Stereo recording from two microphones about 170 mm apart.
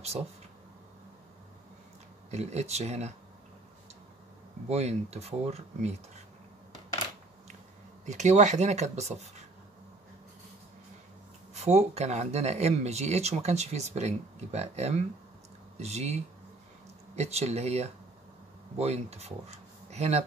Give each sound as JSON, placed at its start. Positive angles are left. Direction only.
{"t": 2.3, "sound": "speech", "side_deg": -40}
{"t": 4.6, "sound": "speech", "side_deg": -40}
{"t": 8.0, "sound": "speech", "side_deg": -45}
{"t": 11.5, "sound": "speech", "side_deg": -40}